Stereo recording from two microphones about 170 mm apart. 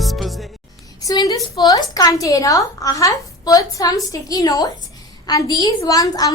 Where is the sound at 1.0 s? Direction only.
25° left (ahead or behind).